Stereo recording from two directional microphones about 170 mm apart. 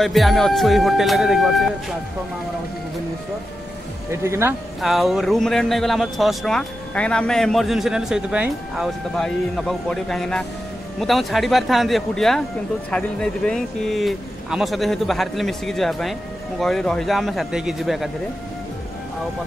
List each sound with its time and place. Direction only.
0.0 s speech: centre (ahead or behind)
4.1 s speech: 15° right (ahead or behind)
4.8 s speech: centre (ahead or behind)